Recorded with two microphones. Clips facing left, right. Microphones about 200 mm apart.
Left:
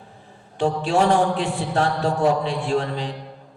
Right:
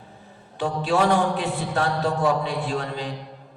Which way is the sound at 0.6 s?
30° left (ahead or behind).